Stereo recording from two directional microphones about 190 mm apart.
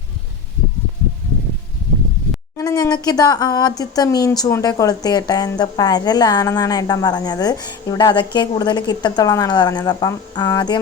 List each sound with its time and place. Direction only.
2.6 s speech: 15° left (ahead or behind)